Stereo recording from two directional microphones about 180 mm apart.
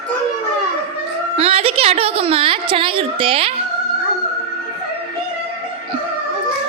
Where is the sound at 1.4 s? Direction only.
35° right (ahead or behind).